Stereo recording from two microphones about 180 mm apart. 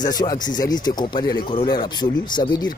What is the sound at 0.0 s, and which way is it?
Speech, 20° left (ahead or behind).